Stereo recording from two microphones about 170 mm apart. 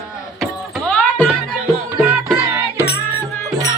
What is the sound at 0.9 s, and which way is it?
Music, 10° left (ahead or behind).